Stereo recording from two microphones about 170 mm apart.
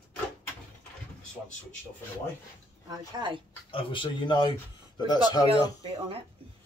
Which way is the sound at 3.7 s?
30° left (ahead or behind).